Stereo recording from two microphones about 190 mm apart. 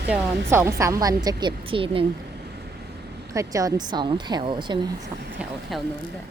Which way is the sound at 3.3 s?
15° right (ahead or behind).